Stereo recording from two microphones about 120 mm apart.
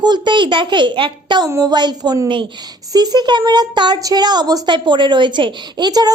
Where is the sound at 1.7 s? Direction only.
35° right (ahead or behind).